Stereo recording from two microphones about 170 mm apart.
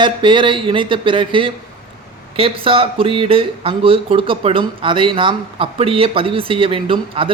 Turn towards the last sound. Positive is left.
turn(degrees=-30)  # may be behind; listen again after turning